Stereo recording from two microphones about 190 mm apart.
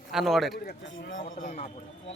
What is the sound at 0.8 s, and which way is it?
Speech, 80° left.